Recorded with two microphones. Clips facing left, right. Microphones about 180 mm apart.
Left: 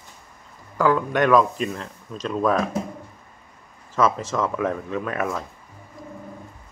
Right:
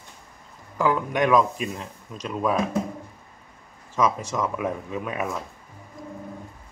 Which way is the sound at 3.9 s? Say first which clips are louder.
Left 2 dB; 15° right (ahead or behind).